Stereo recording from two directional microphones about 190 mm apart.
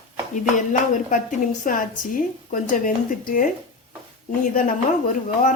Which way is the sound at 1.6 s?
45° left (ahead or behind).